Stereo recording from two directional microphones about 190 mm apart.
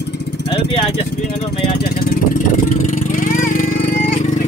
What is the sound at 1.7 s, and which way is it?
Vehicle, 55° left (ahead or behind).